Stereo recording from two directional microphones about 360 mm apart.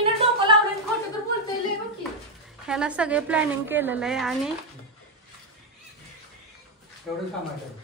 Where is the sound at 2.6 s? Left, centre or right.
Centre.